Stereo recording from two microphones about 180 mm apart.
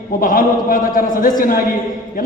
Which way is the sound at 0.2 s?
50° left (ahead or behind).